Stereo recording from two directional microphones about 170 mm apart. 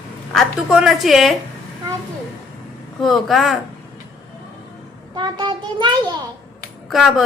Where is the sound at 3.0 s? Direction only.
Centre (ahead or behind).